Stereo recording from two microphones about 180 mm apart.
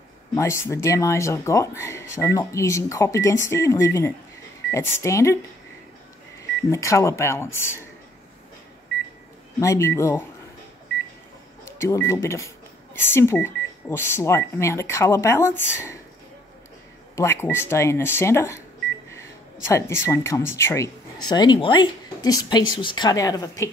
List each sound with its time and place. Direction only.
0.3 s speech: 15° left (ahead or behind)
6.7 s speech: 15° left (ahead or behind)
9.6 s speech: 15° left (ahead or behind)
11.8 s speech: 15° left (ahead or behind)
17.1 s speech: 15° left (ahead or behind)